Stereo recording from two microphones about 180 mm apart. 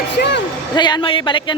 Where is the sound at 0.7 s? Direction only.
25° left (ahead or behind).